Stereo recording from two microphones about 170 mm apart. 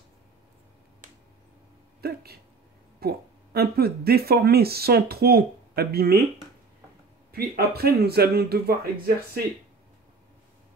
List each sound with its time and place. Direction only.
2.0 s speech: 65° right (ahead or behind)
7.3 s speech: 65° right (ahead or behind)